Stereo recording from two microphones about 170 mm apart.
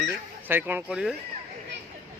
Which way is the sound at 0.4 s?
10° right (ahead or behind).